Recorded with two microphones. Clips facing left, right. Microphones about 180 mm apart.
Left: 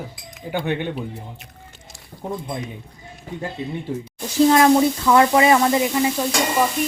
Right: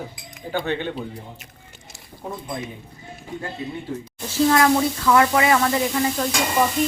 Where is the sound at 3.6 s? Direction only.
25° left (ahead or behind).